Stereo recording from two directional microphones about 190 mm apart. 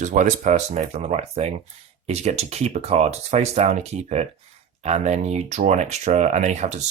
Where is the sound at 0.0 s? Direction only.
40° right (ahead or behind).